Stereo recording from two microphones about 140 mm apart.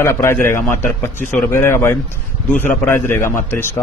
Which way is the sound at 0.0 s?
20° left (ahead or behind).